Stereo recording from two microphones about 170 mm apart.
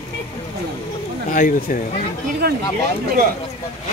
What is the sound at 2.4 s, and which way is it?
Speech, 65° right (ahead or behind).